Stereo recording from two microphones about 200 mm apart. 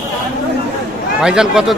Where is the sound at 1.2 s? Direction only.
5° right (ahead or behind).